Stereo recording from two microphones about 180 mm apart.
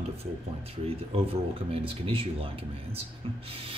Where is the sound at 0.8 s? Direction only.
35° right (ahead or behind).